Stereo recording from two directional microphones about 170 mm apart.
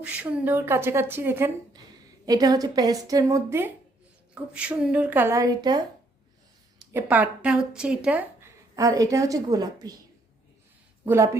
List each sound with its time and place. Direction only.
0.0 s a woman's voice: 10° right (ahead or behind)
2.2 s a woman's voice: 25° right (ahead or behind)
6.9 s a woman's voice: 10° right (ahead or behind)
11.0 s speech: 15° right (ahead or behind)